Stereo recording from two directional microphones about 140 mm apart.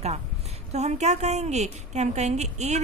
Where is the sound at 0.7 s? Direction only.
55° right (ahead or behind).